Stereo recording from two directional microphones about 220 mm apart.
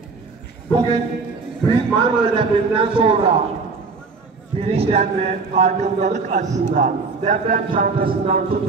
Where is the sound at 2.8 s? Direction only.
25° right (ahead or behind).